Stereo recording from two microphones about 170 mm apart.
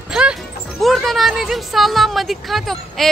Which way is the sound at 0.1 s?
5° right (ahead or behind).